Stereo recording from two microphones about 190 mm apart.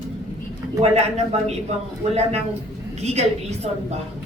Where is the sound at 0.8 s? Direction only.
35° right (ahead or behind).